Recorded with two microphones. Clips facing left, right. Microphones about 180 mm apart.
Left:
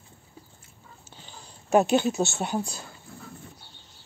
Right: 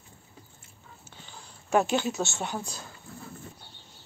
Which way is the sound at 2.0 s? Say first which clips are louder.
Left 5 dB; 35° left (ahead or behind).